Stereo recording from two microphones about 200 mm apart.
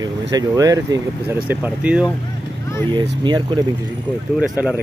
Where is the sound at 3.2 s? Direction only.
20° right (ahead or behind).